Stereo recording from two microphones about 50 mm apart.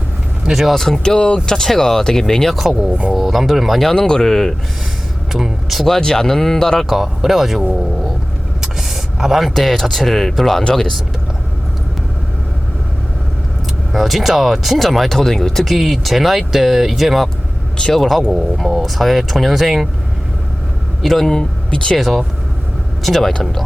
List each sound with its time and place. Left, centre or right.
0.4 s speech: centre
0.7 s speech: centre
2.8 s speech: centre
3.2 s speech: centre
3.8 s speech: centre
5.3 s speech: centre
6.8 s speech: centre
8.6 s a sound: centre
9.6 s speech: centre
13.9 s speech: centre
21.0 s speech: centre
21.9 s speech: centre